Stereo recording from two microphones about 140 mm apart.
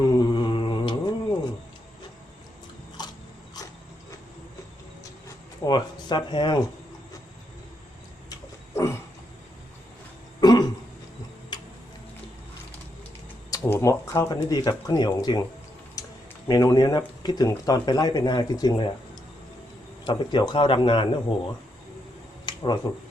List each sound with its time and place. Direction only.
0.2 s mantra: 35° left (ahead or behind)
3.0 s biting: 30° left (ahead or behind)
5.6 s a sound: 30° left (ahead or behind)
8.3 s vehicle: 20° left (ahead or behind)
10.4 s throat clearing: 30° left (ahead or behind)
11.5 s tick-tock: 30° left (ahead or behind)
13.5 s a sound: 20° left (ahead or behind)
14.5 s speech: 25° left (ahead or behind)
16.0 s a sound: 25° left (ahead or behind)
16.5 s speech: 25° left (ahead or behind)
20.1 s speech: 35° left (ahead or behind)
22.4 s a sound: 30° left (ahead or behind)